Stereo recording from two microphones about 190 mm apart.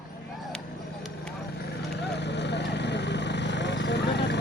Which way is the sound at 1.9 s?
60° left (ahead or behind).